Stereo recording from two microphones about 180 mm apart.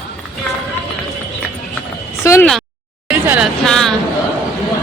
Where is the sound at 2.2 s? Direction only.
15° left (ahead or behind).